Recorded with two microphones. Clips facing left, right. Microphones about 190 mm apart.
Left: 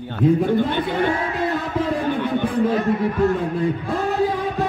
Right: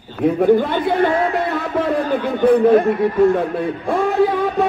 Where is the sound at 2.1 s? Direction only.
65° right (ahead or behind).